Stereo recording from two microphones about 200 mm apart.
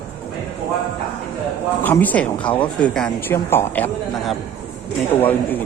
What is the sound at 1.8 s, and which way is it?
Speech, 10° left (ahead or behind).